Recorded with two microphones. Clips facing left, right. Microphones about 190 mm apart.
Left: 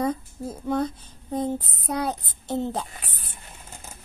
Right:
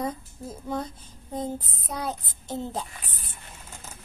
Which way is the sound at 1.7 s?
65° left (ahead or behind).